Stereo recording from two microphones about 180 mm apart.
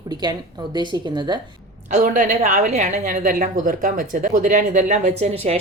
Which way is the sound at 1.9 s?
45° right (ahead or behind).